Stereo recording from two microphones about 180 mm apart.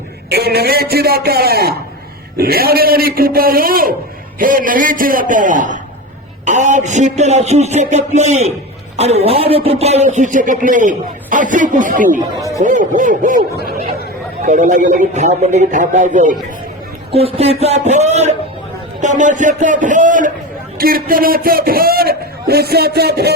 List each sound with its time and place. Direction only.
0.3 s a man's voice: 60° right (ahead or behind); by 13.4 s 45° right (ahead or behind)
14.4 s speech: 45° right (ahead or behind)
17.1 s a man's voice: 30° right (ahead or behind); by 23.3 s 60° right (ahead or behind)